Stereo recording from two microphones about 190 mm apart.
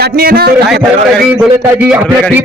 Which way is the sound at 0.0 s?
55° right (ahead or behind).